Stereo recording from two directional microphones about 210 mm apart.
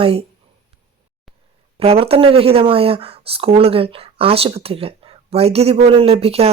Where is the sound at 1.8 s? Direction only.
30° right (ahead or behind).